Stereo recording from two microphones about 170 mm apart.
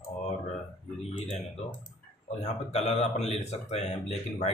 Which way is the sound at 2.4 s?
40° left (ahead or behind).